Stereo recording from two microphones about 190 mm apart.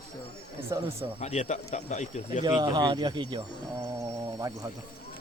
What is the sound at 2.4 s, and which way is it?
Speech, 20° right (ahead or behind).